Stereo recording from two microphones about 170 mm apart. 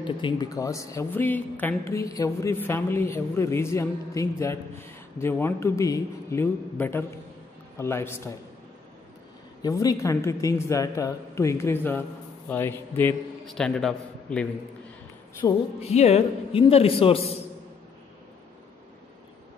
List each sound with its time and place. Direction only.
0.0 s a woman's voice: 25° left (ahead or behind)
9.6 s a woman's voice: 20° left (ahead or behind); by 14.5 s 5° left (ahead or behind)
15.4 s speech: 25° left (ahead or behind)
15.8 s a man's voice: 40° left (ahead or behind)